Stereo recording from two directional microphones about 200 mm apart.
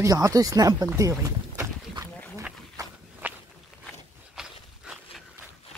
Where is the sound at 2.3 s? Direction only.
10° right (ahead or behind).